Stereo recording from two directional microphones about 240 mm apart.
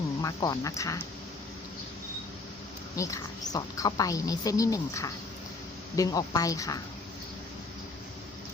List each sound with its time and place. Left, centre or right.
0.2 s a woman's voice: centre
2.9 s a woman's voice: centre